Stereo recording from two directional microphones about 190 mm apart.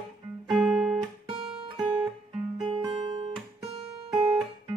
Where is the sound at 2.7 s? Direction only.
25° right (ahead or behind).